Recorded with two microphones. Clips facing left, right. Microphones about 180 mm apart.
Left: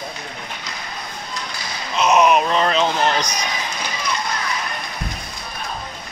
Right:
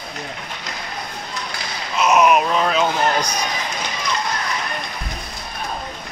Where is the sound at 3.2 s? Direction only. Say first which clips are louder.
Right 1 dB; 55° right (ahead or behind).